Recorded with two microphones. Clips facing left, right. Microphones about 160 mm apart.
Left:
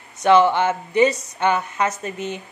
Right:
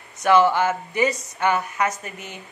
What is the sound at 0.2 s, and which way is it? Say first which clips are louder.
Speech: left 2 dB; 20° left (ahead or behind).